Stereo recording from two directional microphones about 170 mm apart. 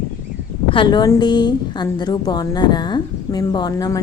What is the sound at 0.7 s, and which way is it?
A woman's voice, 30° left (ahead or behind).